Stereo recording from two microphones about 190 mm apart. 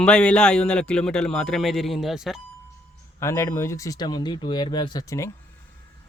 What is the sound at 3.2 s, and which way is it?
Speech, 15° left (ahead or behind).